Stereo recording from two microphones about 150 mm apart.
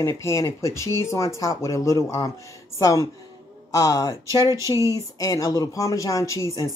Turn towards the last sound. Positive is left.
turn(degrees=20)  # may be behind; listen again after turning